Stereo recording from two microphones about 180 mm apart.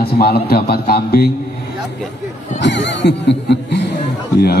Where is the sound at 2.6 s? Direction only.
80° left.